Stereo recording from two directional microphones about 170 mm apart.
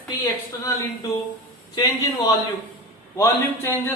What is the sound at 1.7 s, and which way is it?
Speech, 25° left (ahead or behind).